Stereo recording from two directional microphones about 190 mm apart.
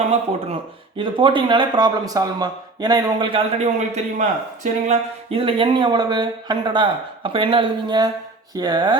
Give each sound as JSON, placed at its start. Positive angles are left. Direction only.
{"t": 0.9, "sound": "a man's voice", "side_deg": -25}